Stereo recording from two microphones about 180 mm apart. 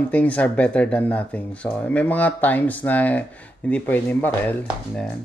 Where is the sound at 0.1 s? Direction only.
10° left (ahead or behind).